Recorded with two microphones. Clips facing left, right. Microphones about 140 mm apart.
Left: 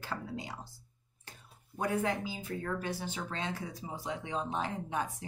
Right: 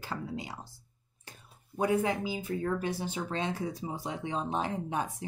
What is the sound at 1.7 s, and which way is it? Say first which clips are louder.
Speech: right 4 dB; 15° right (ahead or behind).